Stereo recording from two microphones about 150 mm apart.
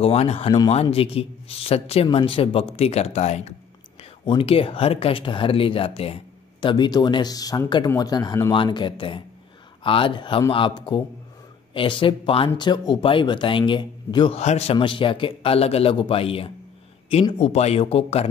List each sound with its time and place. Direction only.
0.0 s a man's voice: 45° left (ahead or behind)
4.3 s a man's voice: 35° left (ahead or behind)
14.4 s a man's voice: 45° left (ahead or behind)